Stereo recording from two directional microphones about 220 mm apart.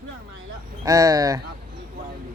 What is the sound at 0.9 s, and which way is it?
Speech, 15° right (ahead or behind).